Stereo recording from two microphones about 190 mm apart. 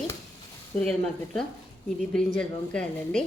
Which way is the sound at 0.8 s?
5° left (ahead or behind).